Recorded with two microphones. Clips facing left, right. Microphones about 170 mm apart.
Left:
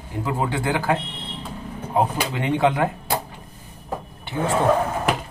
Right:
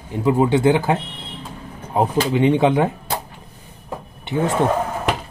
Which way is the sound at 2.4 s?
20° right (ahead or behind).